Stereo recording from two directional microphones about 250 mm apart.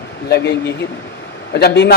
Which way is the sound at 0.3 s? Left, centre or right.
Left.